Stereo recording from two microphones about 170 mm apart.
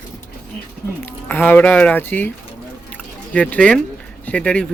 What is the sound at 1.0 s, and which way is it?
Speech, 10° left (ahead or behind).